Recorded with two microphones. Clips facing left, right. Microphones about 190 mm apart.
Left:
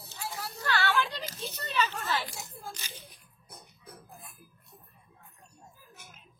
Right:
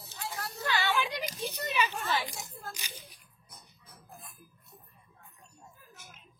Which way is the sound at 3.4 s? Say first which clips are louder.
Left 7 dB; 60° left (ahead or behind).